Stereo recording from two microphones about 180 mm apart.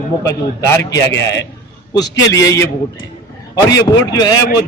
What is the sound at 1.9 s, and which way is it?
A man's voice, 20° left (ahead or behind).